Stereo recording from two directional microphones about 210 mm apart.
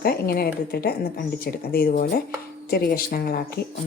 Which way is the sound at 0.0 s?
45° left (ahead or behind).